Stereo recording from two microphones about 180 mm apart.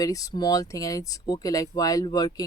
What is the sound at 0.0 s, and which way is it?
Speech, 20° left (ahead or behind).